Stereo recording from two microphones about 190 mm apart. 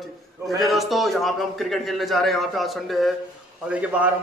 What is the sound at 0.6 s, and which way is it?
A man's voice, centre (ahead or behind).